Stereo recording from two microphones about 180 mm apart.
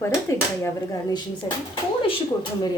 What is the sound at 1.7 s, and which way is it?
Speech, 30° left (ahead or behind).